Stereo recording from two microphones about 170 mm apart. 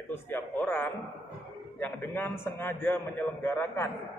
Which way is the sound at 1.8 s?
15° left (ahead or behind).